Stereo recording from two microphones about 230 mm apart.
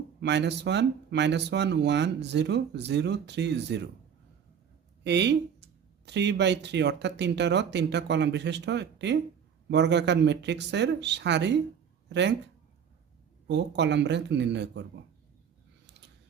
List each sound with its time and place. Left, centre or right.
0.2 s speech: right
5.0 s speech: right
13.5 s speech: right